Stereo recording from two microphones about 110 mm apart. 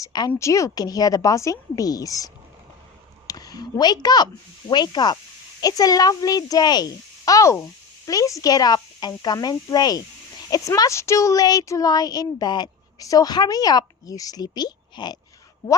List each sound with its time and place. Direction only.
0.0 s speech: 40° left (ahead or behind)
0.3 s speech: 25° left (ahead or behind)